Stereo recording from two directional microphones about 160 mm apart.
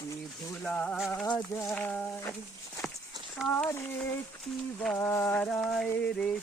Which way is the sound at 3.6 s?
10° left (ahead or behind).